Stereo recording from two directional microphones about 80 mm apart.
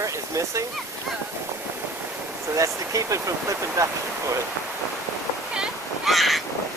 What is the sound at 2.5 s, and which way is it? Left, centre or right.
Speech, right.